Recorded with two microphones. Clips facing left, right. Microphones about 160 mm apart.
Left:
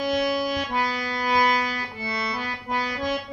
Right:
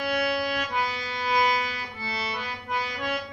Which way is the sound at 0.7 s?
40° left (ahead or behind).